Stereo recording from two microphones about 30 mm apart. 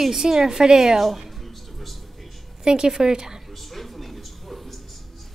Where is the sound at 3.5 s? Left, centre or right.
Centre.